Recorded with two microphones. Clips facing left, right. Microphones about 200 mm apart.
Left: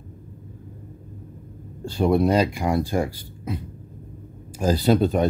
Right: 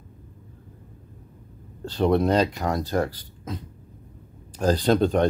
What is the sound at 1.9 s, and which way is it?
Speech, 10° left (ahead or behind).